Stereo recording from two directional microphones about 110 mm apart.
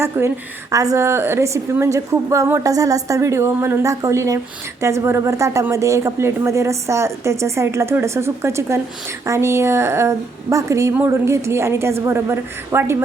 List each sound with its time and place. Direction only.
0.0 s a woman's voice: 25° right (ahead or behind)